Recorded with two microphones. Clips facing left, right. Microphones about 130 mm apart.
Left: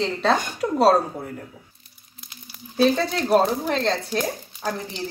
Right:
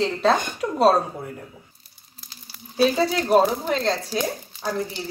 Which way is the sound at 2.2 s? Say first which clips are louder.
Left 2 dB; 35° right (ahead or behind).